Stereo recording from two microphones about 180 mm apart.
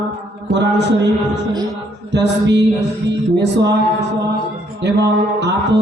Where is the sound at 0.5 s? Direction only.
70° right (ahead or behind).